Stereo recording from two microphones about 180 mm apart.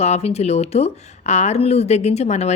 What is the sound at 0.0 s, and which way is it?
Speech, 35° left (ahead or behind).